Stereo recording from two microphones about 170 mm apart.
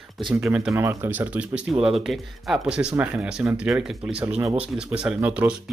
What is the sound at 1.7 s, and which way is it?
Speech, 35° right (ahead or behind).